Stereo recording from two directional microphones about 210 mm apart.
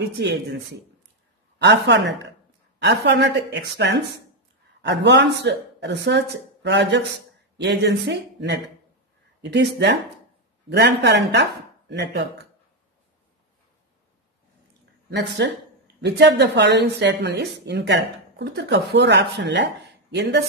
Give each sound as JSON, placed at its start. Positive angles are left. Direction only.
{"t": 0.0, "sound": "a woman's voice", "side_deg": -55}
{"t": 1.6, "sound": "a woman's voice", "side_deg": -55}
{"t": 15.0, "sound": "a woman's voice", "side_deg": -55}